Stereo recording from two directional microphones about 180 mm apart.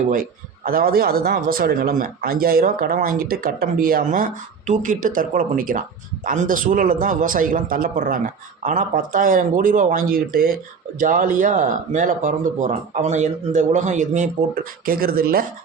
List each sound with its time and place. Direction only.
0.1 s speech: 50° right (ahead or behind)